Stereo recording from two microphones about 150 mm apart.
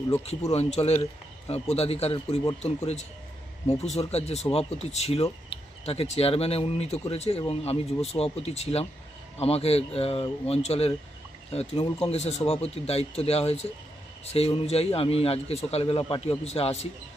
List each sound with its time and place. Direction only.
0.5 s speech: 45° left (ahead or behind)